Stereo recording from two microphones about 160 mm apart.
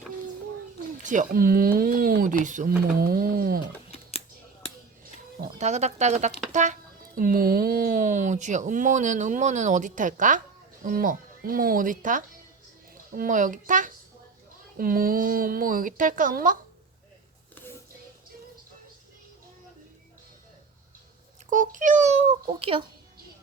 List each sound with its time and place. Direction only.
1.0 s speech: 50° right (ahead or behind)
5.5 s speech: 45° right (ahead or behind)
7.2 s speech: 65° right (ahead or behind)
21.5 s speech: 55° right (ahead or behind); by 22.8 s 40° right (ahead or behind)